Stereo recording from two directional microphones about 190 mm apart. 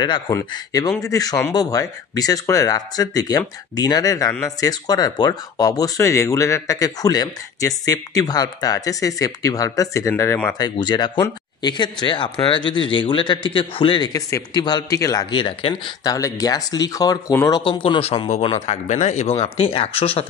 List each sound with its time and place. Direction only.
0.0 s speech: 20° left (ahead or behind)
10.8 s speech: 25° left (ahead or behind)